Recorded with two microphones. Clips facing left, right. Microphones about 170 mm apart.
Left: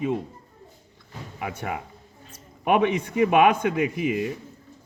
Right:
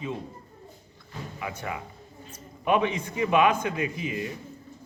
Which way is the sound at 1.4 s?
65° left (ahead or behind).